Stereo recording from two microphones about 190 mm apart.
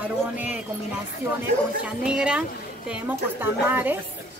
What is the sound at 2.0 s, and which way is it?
A man's voice, 5° right (ahead or behind).